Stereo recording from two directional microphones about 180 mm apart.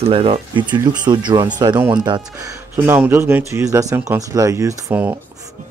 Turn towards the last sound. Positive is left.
turn(degrees=-15)  # may be behind; listen again after turning